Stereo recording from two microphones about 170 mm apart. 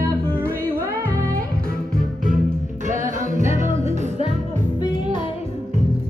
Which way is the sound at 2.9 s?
45° right (ahead or behind).